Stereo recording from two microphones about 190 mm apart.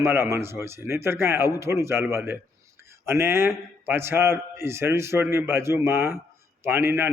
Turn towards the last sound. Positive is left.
turn(degrees=-10)  # may be behind; listen again after turning